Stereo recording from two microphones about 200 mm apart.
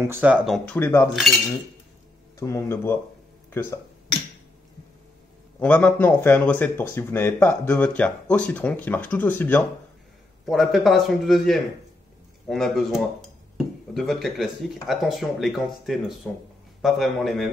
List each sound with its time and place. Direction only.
0.0 s speech: 10° right (ahead or behind)
0.7 s speech: 10° left (ahead or behind)
2.3 s speech: 15° left (ahead or behind)
5.6 s speech: 5° left (ahead or behind)
10.4 s speech: centre (ahead or behind)